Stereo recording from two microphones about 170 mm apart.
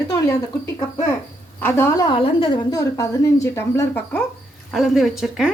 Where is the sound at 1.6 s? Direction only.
15° left (ahead or behind).